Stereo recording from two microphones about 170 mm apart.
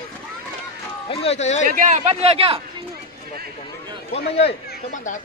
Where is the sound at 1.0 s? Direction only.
35° left (ahead or behind).